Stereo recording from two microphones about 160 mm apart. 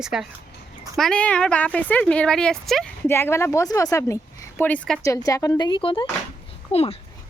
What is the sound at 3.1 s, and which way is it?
Speech, 15° left (ahead or behind).